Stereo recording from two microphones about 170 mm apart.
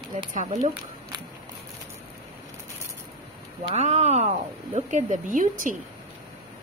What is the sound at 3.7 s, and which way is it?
A woman's voice, 40° right (ahead or behind).